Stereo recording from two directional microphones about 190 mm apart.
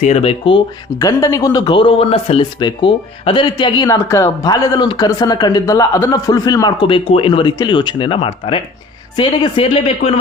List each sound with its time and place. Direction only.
0.0 s speech: 35° left (ahead or behind)